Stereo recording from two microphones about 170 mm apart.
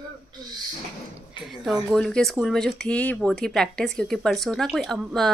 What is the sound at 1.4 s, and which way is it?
Speech, centre (ahead or behind).